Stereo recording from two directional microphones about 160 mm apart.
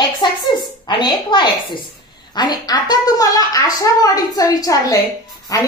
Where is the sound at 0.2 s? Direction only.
30° left (ahead or behind).